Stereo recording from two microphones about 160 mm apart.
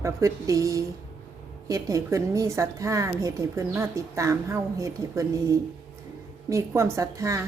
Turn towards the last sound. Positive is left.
turn(degrees=-20)  # may be behind; listen again after turning